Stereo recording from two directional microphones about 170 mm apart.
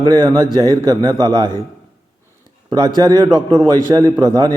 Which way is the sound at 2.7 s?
25° right (ahead or behind).